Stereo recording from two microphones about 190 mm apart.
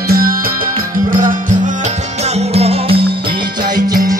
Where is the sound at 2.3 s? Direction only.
30° right (ahead or behind).